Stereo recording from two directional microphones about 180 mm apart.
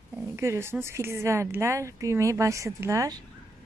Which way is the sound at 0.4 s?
15° right (ahead or behind).